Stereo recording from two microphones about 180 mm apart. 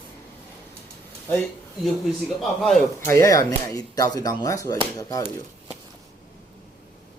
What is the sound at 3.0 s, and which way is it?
Speech, 15° left (ahead or behind).